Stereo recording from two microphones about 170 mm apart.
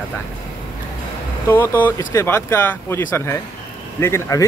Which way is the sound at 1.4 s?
10° left (ahead or behind).